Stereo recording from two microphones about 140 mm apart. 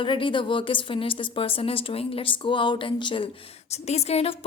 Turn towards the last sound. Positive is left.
turn(degrees=45)  # may be behind; listen again after turning